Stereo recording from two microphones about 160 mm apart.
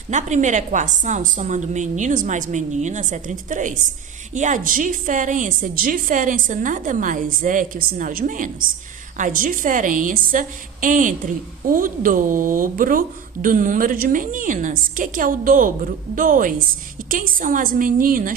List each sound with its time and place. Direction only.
0.1 s a woman's voice: 50° right (ahead or behind)